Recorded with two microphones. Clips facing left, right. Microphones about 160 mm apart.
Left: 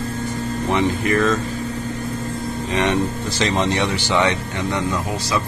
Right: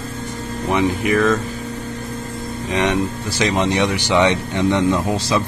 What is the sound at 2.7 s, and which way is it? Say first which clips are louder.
Speech: right 1 dB; 15° right (ahead or behind).